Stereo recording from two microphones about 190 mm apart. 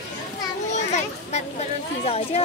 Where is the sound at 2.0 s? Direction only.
30° left (ahead or behind).